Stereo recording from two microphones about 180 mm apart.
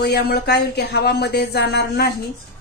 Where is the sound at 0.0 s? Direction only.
65° left (ahead or behind).